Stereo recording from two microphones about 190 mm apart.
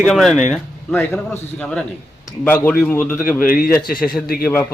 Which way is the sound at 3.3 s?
45° left (ahead or behind).